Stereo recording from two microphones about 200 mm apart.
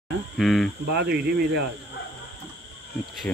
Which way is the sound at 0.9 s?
55° right (ahead or behind).